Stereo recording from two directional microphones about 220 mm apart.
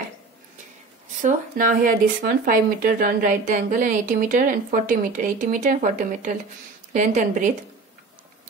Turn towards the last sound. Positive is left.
turn(degrees=-35)  # may be behind; listen again after turning